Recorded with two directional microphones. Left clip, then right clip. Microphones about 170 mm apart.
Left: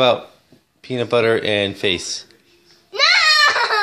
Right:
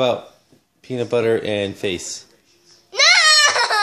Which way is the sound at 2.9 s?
20° right (ahead or behind).